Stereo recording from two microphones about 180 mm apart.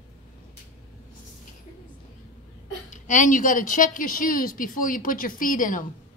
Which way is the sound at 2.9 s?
45° left (ahead or behind).